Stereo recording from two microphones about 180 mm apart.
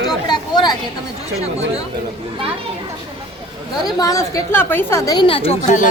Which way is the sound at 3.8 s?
20° left (ahead or behind).